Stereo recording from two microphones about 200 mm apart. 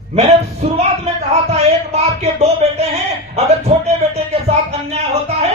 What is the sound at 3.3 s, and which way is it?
Music, 30° right (ahead or behind).